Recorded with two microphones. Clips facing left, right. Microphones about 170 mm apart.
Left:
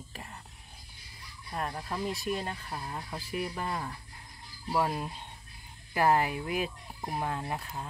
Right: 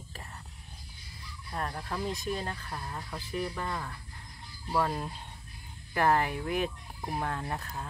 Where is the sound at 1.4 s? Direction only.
10° left (ahead or behind).